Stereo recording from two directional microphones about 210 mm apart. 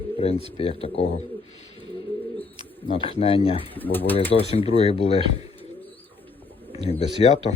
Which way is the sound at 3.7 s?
10° left (ahead or behind).